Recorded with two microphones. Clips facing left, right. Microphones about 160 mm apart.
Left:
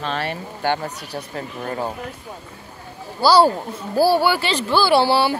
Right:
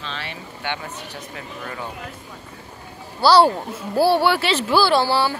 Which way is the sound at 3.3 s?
5° left (ahead or behind).